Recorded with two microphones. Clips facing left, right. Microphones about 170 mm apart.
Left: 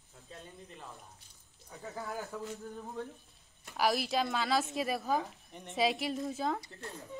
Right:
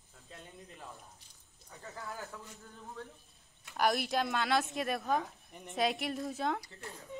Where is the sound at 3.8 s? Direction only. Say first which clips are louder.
Even; centre (ahead or behind).